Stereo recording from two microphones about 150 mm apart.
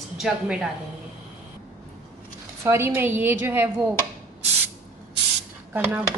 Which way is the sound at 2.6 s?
15° right (ahead or behind).